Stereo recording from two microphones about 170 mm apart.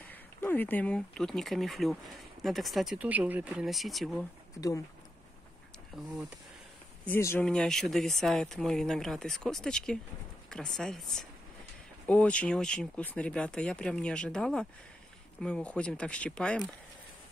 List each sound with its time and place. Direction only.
0.0 s speech: 10° left (ahead or behind)
4.6 s speech: 20° left (ahead or behind)
7.1 s speech: 15° left (ahead or behind)
7.4 s speech: centre (ahead or behind)